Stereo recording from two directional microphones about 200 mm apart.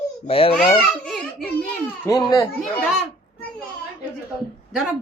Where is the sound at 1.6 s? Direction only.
15° left (ahead or behind).